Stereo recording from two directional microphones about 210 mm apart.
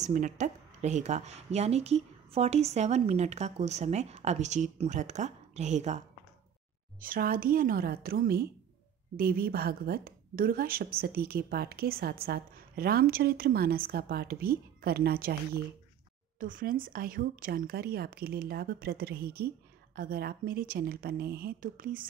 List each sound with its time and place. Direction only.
0.0 s a woman's voice: 35° right (ahead or behind)